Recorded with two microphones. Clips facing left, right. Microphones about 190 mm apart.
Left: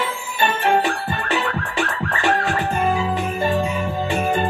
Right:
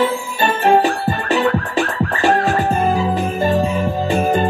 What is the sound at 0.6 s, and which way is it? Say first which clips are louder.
Music: right 7 dB; 40° right (ahead or behind).